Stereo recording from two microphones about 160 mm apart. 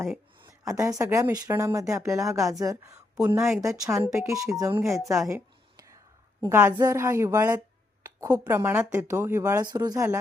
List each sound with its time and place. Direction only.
0.4 s speech: 20° right (ahead or behind)
5.3 s a sound: 20° right (ahead or behind)
6.4 s speech: 15° right (ahead or behind)